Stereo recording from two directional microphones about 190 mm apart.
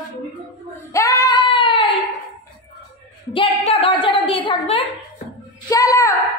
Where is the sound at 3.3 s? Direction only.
30° left (ahead or behind).